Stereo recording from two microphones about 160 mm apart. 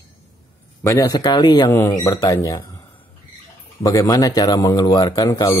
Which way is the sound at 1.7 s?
15° left (ahead or behind).